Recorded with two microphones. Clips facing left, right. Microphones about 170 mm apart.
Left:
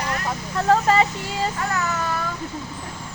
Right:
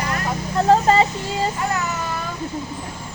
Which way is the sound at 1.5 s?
15° right (ahead or behind).